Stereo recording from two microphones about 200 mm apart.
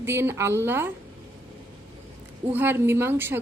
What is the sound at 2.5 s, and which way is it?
Speech, 10° right (ahead or behind).